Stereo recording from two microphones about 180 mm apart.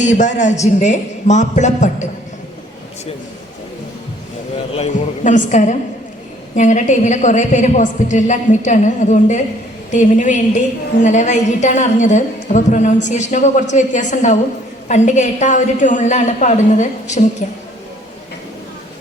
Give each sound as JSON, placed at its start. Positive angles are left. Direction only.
{"t": 0.0, "sound": "a woman's voice", "side_deg": 40}
{"t": 4.7, "sound": "a woman's voice", "side_deg": 40}